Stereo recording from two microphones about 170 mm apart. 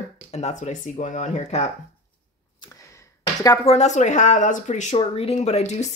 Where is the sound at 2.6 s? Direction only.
20° left (ahead or behind).